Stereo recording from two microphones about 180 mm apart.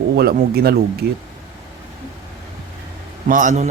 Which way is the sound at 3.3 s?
45° right (ahead or behind).